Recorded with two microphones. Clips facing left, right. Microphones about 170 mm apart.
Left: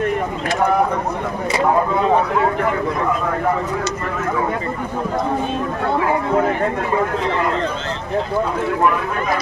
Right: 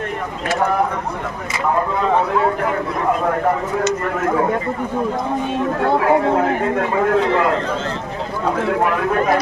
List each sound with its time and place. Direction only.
8.6 s speech: 70° right (ahead or behind)